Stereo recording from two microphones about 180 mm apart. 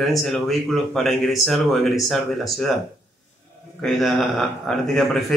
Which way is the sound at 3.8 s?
Centre (ahead or behind).